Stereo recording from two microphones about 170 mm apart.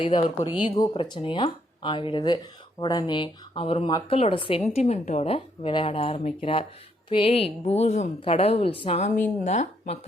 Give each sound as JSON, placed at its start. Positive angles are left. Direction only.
{"t": 0.0, "sound": "a woman's voice", "side_deg": 30}